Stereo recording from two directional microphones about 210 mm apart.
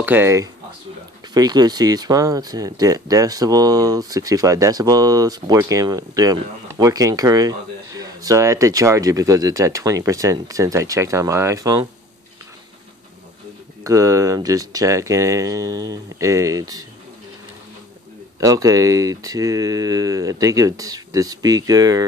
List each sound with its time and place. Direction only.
0.0 s speech: 10° right (ahead or behind)
13.8 s speech: 15° right (ahead or behind)
18.4 s speech: 15° right (ahead or behind)